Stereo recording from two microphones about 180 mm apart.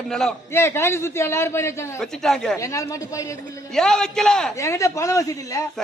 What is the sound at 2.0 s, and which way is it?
Speech, 5° left (ahead or behind).